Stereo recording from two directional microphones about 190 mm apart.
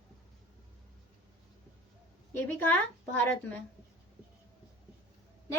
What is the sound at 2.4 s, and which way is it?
A woman's voice, 10° left (ahead or behind).